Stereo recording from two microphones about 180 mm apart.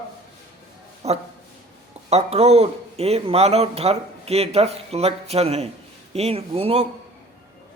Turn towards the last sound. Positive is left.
turn(degrees=-30)  # may be behind; listen again after turning